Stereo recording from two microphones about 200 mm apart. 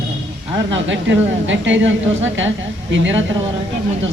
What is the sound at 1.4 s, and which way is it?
Speech, 70° right (ahead or behind).